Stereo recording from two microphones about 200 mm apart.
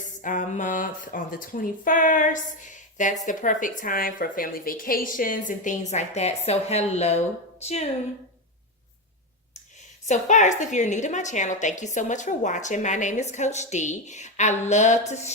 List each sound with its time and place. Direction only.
0.0 s a woman's voice: 40° left (ahead or behind)
10.1 s a woman's voice: 35° left (ahead or behind)